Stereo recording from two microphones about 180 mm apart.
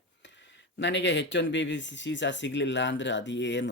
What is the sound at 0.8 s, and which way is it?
Speech, 85° left.